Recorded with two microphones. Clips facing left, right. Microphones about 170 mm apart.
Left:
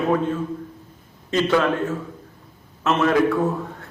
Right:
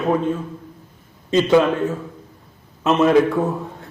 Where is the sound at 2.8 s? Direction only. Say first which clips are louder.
Right 4 dB; 20° right (ahead or behind).